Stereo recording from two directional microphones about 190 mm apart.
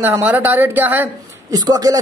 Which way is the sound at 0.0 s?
10° right (ahead or behind).